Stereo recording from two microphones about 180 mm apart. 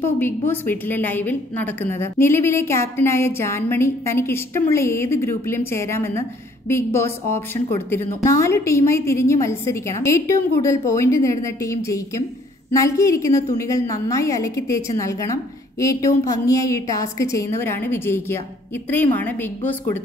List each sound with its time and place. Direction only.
0.0 s a woman's voice: 10° left (ahead or behind)